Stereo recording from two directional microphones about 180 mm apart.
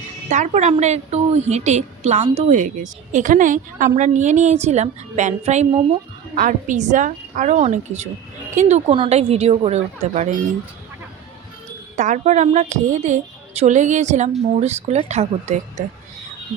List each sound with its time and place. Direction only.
0.3 s a woman's voice: 40° right (ahead or behind)
11.9 s a woman's voice: 45° right (ahead or behind)